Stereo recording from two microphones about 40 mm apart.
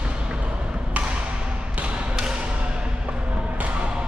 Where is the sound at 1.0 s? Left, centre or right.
Right.